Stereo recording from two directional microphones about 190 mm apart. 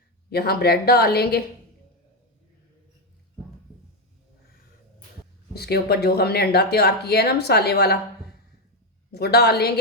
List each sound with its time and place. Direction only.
0.3 s speech: 55° left (ahead or behind)
5.5 s speech: 55° left (ahead or behind)
9.1 s speech: 55° left (ahead or behind)